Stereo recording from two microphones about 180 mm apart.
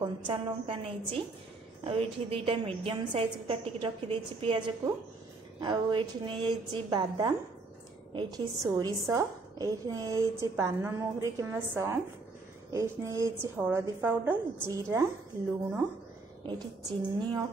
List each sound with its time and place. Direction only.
0.3 s a woman's voice: 30° right (ahead or behind)
16.4 s a woman's voice: 25° right (ahead or behind)